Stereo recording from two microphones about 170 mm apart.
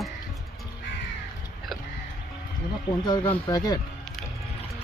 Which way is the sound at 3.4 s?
20° left (ahead or behind).